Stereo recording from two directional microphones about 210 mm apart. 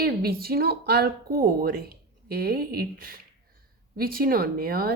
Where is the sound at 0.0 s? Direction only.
45° right (ahead or behind).